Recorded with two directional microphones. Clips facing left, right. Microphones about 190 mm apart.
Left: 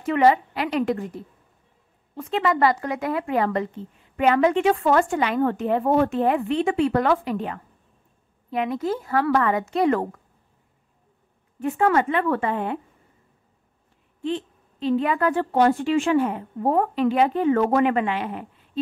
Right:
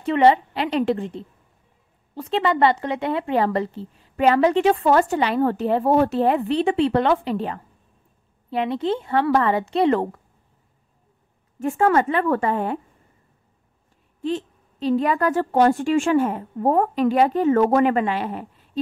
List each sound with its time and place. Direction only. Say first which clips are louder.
0.0 s a woman's voice: right 2 dB; 30° right (ahead or behind)
11.6 s speech: right 2 dB; 45° right (ahead or behind)
14.2 s speech: right 2 dB; 40° right (ahead or behind)